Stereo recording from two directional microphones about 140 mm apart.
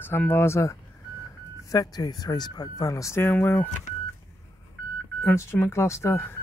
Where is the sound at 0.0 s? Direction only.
15° left (ahead or behind).